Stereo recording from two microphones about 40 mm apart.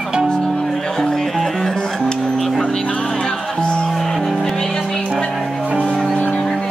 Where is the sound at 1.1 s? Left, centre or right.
Centre.